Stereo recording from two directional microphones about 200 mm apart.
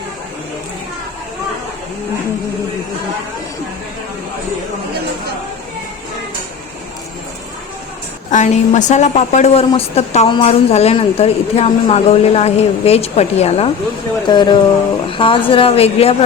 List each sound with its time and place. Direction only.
8.3 s a woman's voice: 35° left (ahead or behind)